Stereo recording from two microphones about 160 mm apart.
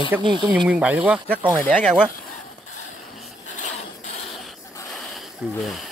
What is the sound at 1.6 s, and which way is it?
Speech, 10° left (ahead or behind).